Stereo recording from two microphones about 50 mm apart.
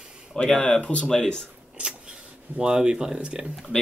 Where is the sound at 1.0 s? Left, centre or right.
Centre.